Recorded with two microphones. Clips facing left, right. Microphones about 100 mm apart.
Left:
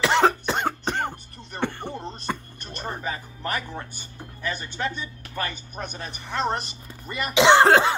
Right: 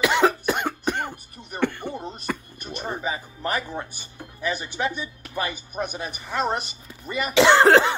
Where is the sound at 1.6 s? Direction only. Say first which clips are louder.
Right 3 dB; 35° left (ahead or behind).